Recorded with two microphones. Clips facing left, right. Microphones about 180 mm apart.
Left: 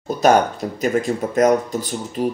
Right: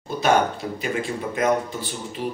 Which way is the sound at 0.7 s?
40° left (ahead or behind).